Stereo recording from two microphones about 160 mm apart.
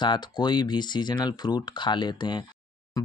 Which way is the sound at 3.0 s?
20° left (ahead or behind).